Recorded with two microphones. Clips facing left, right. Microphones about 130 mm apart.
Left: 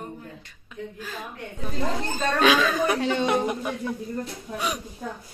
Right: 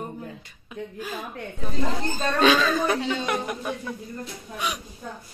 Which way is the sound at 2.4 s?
10° left (ahead or behind).